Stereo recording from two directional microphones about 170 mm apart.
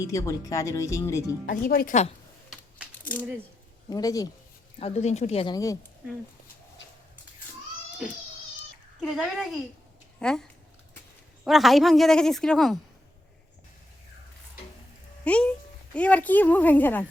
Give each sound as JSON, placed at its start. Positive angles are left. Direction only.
{"t": 0.0, "sound": "speech", "side_deg": 20}
{"t": 1.5, "sound": "speech", "side_deg": 55}
{"t": 2.5, "sound": "a sound", "side_deg": -5}
{"t": 3.0, "sound": "a sound", "side_deg": 10}
{"t": 3.8, "sound": "speech", "side_deg": 20}
{"t": 4.8, "sound": "speech", "side_deg": 40}
{"t": 5.5, "sound": "speech", "side_deg": 20}
{"t": 9.1, "sound": "speech", "side_deg": 0}
{"t": 15.2, "sound": "a woman's voice", "side_deg": 5}